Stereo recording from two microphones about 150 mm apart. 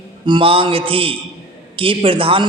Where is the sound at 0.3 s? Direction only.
35° right (ahead or behind).